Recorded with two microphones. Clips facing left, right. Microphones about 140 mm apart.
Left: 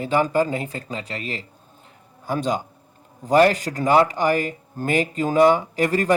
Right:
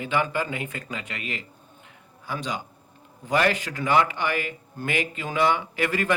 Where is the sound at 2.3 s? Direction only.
45° left (ahead or behind).